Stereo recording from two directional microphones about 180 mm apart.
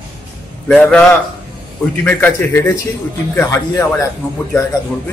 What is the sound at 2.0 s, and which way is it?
Speech, 10° left (ahead or behind).